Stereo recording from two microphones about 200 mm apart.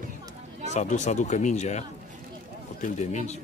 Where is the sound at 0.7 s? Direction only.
35° left (ahead or behind).